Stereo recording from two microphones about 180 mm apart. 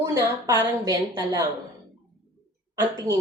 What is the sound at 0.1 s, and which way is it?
A woman's voice, 15° right (ahead or behind).